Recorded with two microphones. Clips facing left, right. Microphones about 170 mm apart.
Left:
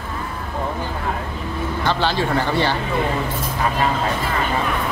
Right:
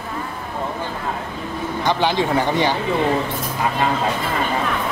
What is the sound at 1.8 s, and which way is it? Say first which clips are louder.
Speech: right 2 dB; 15° right (ahead or behind).